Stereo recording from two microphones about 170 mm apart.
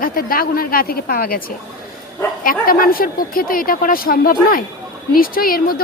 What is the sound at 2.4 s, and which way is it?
A woman's voice, 60° left (ahead or behind).